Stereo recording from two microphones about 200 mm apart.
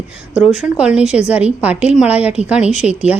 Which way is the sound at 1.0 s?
35° left (ahead or behind).